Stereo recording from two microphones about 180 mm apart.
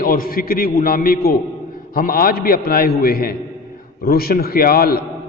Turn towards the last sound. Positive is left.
turn(degrees=55)  # may be behind; listen again after turning